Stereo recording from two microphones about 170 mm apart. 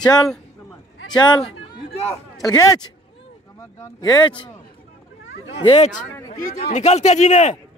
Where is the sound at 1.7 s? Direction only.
35° left (ahead or behind).